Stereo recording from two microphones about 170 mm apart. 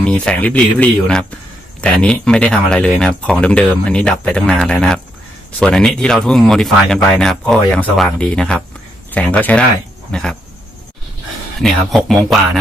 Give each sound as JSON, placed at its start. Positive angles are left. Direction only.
{"t": 0.0, "sound": "speech", "side_deg": 5}
{"t": 11.6, "sound": "speech", "side_deg": 0}